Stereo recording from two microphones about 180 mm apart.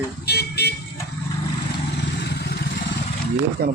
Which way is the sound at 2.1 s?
65° left (ahead or behind).